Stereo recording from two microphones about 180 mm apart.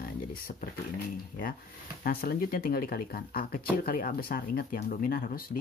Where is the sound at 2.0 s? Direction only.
55° left (ahead or behind).